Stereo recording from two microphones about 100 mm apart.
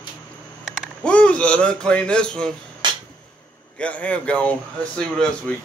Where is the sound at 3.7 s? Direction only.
15° left (ahead or behind).